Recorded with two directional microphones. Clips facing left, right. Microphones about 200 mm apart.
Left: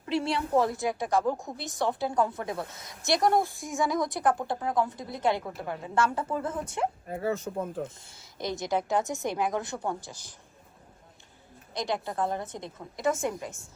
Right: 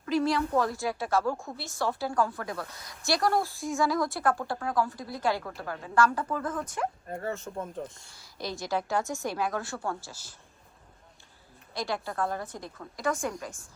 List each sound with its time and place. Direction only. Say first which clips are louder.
0.0 s a woman's voice: right 2 dB; 30° left (ahead or behind)
7.1 s speech: left 4 dB; 5° left (ahead or behind)
7.4 s speech: left 4 dB; 15° left (ahead or behind)
7.7 s speech: left 3 dB; 5° left (ahead or behind)
8.1 s a woman's voice: left 3 dB; 20° left (ahead or behind)
11.7 s a woman's voice: left 2 dB; 20° left (ahead or behind)